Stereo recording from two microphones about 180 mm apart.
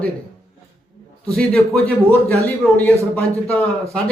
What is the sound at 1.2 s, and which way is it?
A man's voice, 5° left (ahead or behind).